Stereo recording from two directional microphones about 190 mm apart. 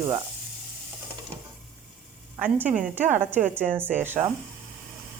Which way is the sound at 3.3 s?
10° right (ahead or behind).